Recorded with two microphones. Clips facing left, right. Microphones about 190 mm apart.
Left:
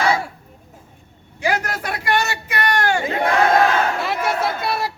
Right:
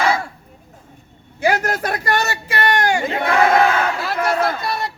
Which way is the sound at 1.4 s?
45° right (ahead or behind).